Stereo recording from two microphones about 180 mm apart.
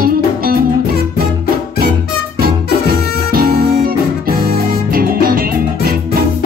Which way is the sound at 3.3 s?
55° right (ahead or behind).